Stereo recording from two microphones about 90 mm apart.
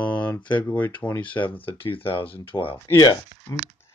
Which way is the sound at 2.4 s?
80° left.